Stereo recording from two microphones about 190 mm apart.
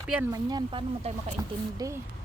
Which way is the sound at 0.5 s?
25° right (ahead or behind).